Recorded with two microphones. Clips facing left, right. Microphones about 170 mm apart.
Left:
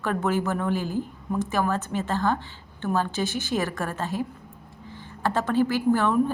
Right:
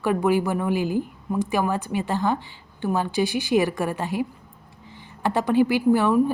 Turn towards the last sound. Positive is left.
turn(degrees=-10)  # may be behind; listen again after turning